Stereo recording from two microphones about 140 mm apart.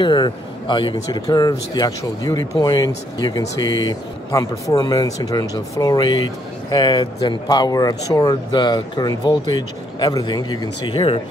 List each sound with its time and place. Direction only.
0.0 s speech: 35° left (ahead or behind)